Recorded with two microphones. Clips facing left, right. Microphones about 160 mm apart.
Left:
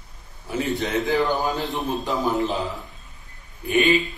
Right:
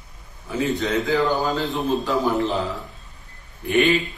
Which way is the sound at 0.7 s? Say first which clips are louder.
Even; 20° left (ahead or behind).